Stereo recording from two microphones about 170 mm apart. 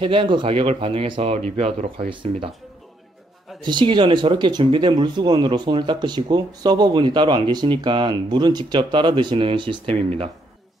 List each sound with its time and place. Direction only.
0.0 s speech: 30° right (ahead or behind)
3.6 s speech: 25° right (ahead or behind)